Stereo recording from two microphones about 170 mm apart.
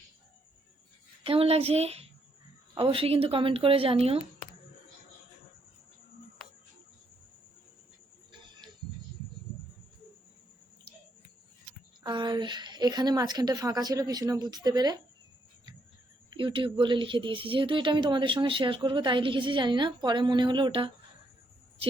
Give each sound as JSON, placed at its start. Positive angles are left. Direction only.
{"t": 1.2, "sound": "a child's voice", "side_deg": -35}
{"t": 12.0, "sound": "speech", "side_deg": -25}
{"t": 16.3, "sound": "speech", "side_deg": -30}